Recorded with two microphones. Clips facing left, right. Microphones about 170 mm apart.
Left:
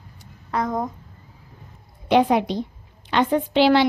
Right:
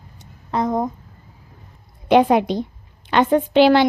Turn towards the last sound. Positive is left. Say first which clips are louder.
# right 3 dB
turn(degrees=-50)  # may be behind; listen again after turning